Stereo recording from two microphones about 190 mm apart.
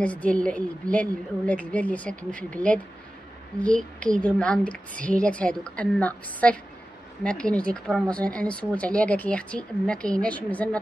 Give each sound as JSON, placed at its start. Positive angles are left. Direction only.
{"t": 0.0, "sound": "a woman's voice", "side_deg": 5}